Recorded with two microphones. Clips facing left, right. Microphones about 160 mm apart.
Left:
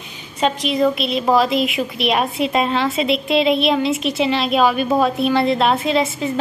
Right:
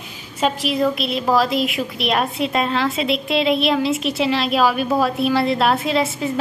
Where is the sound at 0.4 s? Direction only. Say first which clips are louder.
Left 2 dB; 5° right (ahead or behind).